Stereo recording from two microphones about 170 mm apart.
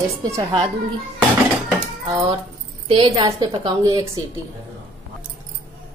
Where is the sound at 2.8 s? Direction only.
30° right (ahead or behind).